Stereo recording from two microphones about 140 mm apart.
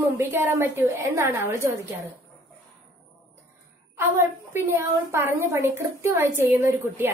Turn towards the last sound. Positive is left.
turn(degrees=-20)  # may be behind; listen again after turning